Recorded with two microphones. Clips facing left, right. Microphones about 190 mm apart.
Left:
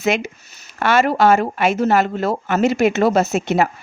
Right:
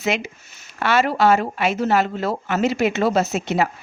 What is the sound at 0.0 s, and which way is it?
Speech, 50° left (ahead or behind).